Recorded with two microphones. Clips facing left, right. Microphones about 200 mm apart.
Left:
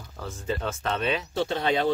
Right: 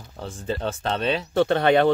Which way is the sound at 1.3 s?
60° right (ahead or behind).